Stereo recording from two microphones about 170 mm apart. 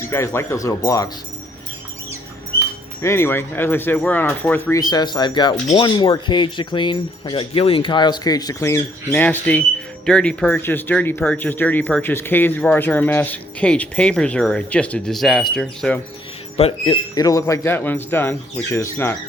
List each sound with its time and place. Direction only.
0.0 s speech: 15° left (ahead or behind)
3.0 s speech: 15° left (ahead or behind)
4.8 s speech: 25° left (ahead or behind); by 16.0 s 5° left (ahead or behind)
16.6 s speech: 35° left (ahead or behind); by 19.1 s 15° left (ahead or behind)